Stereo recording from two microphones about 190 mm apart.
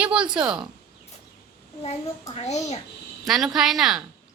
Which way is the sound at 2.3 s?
35° left (ahead or behind).